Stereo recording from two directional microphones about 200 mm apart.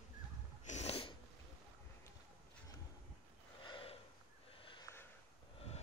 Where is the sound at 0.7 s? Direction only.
35° left (ahead or behind).